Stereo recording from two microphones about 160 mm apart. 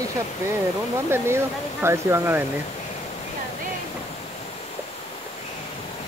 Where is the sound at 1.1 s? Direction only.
15° right (ahead or behind).